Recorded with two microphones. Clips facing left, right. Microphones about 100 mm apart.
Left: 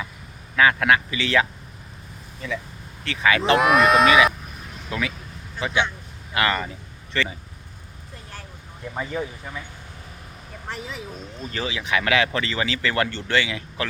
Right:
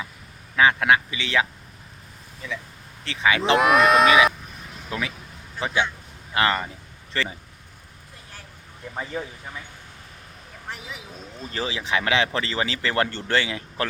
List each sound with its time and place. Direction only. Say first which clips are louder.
0.5 s speech: even; 20° right (ahead or behind)
3.0 s speech: left 1 dB; 25° right (ahead or behind)
3.5 s speech: even; centre (ahead or behind)
4.9 s speech: left 2 dB; 25° right (ahead or behind)
5.5 s speech: left 1 dB; 35° right (ahead or behind)
10.7 s speech: left 4 dB; 10° right (ahead or behind)
11.5 s speech: even; 30° right (ahead or behind)